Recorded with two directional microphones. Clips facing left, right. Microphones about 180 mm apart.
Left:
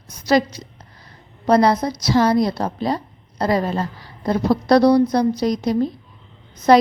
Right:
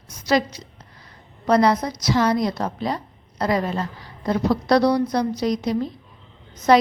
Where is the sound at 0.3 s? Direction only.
35° left (ahead or behind).